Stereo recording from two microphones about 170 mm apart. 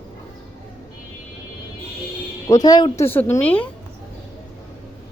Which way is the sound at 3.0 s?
15° left (ahead or behind).